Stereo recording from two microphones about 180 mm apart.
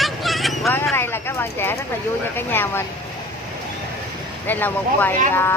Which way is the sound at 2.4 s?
10° left (ahead or behind).